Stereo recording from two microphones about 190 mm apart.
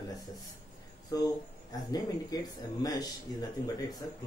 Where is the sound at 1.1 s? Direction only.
20° left (ahead or behind).